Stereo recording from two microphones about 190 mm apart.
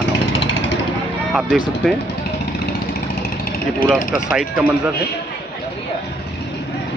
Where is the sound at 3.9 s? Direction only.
Centre (ahead or behind).